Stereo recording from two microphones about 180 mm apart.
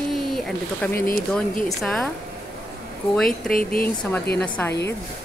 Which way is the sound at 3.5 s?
55° left (ahead or behind).